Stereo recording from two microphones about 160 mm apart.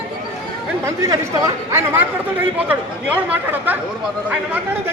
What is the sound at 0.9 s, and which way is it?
Speech, 20° right (ahead or behind).